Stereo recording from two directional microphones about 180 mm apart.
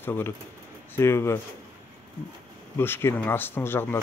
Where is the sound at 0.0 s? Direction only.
10° left (ahead or behind).